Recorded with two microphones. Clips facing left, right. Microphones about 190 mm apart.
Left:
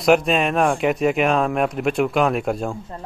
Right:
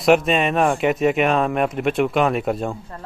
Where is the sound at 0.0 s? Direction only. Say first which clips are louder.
Even; centre (ahead or behind).